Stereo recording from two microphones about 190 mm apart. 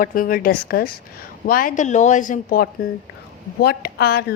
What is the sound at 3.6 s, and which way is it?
Speech, 55° left (ahead or behind).